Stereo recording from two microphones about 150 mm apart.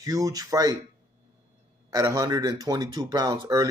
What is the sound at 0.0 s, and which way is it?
Speech, 20° right (ahead or behind).